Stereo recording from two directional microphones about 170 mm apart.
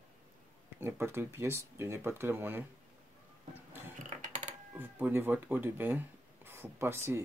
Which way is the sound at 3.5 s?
15° right (ahead or behind).